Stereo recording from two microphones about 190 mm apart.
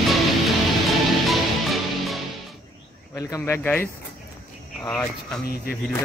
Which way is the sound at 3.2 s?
15° left (ahead or behind).